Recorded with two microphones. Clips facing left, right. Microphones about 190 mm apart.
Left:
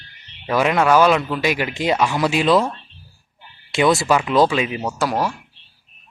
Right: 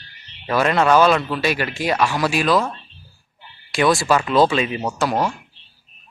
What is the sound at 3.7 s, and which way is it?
Speech, 20° left (ahead or behind).